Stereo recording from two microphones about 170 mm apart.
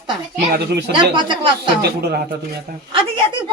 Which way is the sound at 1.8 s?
70° right (ahead or behind).